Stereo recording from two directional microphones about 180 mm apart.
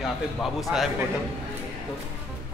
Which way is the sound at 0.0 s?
Centre (ahead or behind).